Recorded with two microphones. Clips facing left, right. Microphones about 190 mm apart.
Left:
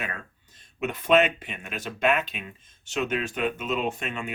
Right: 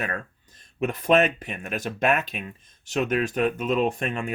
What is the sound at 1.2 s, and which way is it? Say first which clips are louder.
Speech: right 2 dB; 40° right (ahead or behind).